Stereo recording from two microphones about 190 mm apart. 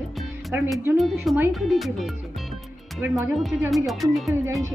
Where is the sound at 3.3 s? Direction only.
Centre (ahead or behind).